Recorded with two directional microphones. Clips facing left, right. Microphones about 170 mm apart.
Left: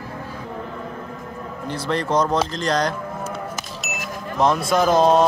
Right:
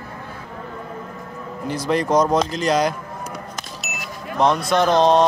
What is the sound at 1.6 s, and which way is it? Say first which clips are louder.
A man's voice: right 3 dB; 10° right (ahead or behind).